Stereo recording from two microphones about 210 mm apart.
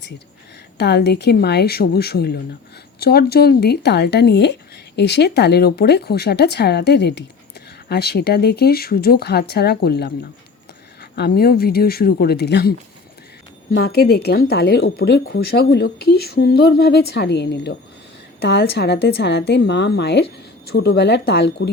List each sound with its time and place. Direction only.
0.8 s speech: 50° left (ahead or behind)
11.1 s speech: 45° left (ahead or behind)